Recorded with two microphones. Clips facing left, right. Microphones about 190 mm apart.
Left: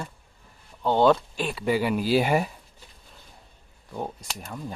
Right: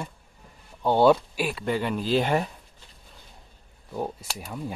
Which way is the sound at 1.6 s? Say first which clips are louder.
Left 6 dB; 10° left (ahead or behind).